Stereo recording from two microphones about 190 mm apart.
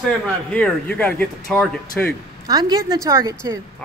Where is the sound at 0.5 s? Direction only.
5° left (ahead or behind).